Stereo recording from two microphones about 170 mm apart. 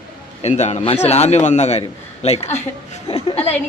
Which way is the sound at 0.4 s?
40° left (ahead or behind).